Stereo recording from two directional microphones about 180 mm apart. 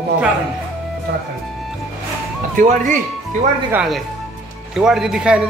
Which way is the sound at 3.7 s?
5° right (ahead or behind).